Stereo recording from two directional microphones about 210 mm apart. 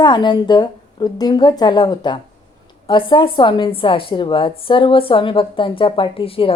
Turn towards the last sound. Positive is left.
turn(degrees=25)  # may be behind; listen again after turning